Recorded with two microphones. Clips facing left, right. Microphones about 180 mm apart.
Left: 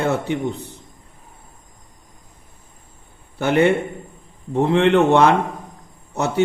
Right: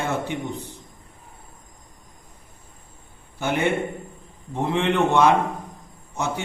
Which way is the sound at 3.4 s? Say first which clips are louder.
Left 6 dB; 60° left (ahead or behind).